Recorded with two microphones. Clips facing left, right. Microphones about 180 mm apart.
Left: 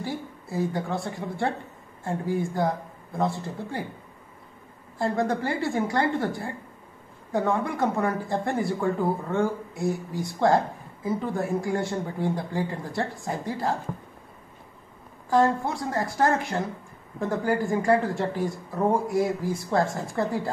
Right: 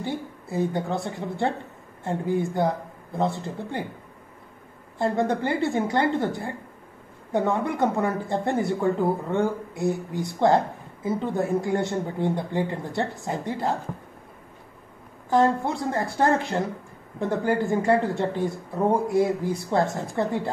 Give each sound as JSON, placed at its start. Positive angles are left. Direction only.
{"t": 0.0, "sound": "a woman's voice", "side_deg": -20}
{"t": 4.9, "sound": "a woman's voice", "side_deg": -25}
{"t": 15.2, "sound": "a woman's voice", "side_deg": -20}